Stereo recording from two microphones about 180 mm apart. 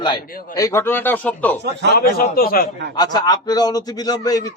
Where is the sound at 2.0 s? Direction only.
60° left (ahead or behind).